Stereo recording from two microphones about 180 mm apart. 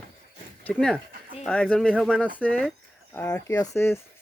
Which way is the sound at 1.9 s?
5° right (ahead or behind).